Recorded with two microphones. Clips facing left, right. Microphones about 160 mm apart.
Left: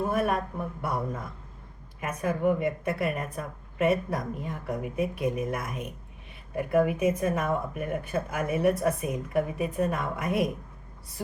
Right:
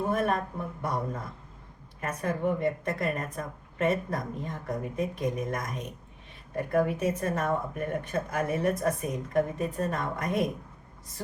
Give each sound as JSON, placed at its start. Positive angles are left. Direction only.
{"t": 0.1, "sound": "speech", "side_deg": 10}